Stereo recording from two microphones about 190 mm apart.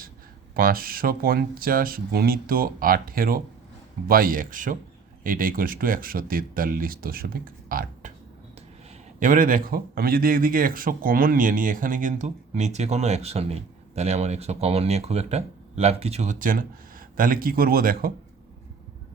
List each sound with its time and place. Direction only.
0.5 s speech: 50° right (ahead or behind)